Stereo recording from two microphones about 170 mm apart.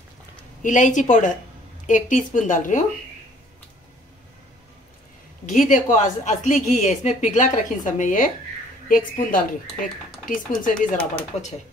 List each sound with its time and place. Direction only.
0.6 s speech: 50° left (ahead or behind)
5.5 s a woman's voice: 50° left (ahead or behind)